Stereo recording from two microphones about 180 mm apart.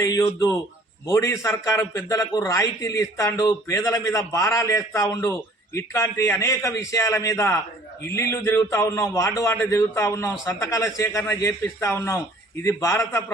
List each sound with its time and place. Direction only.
0.0 s a man's voice: 20° left (ahead or behind)